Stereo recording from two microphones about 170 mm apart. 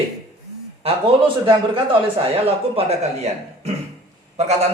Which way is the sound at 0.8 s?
35° right (ahead or behind).